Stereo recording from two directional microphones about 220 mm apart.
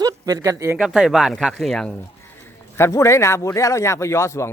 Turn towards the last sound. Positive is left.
turn(degrees=15)  # may be behind; listen again after turning